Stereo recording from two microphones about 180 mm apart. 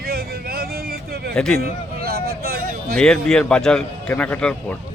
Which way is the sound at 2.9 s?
5° left (ahead or behind).